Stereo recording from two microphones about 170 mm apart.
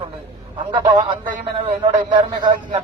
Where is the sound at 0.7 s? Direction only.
25° right (ahead or behind).